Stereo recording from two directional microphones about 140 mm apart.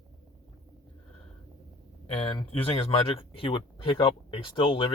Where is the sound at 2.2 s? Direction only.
40° left (ahead or behind).